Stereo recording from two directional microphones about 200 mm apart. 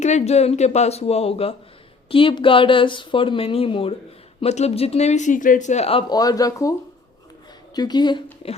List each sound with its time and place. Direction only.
0.0 s speech: 35° left (ahead or behind); by 6.7 s 15° left (ahead or behind)
7.8 s speech: 20° left (ahead or behind)